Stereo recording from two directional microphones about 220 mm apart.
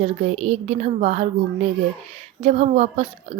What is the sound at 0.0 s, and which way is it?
A child's voice, 30° right (ahead or behind).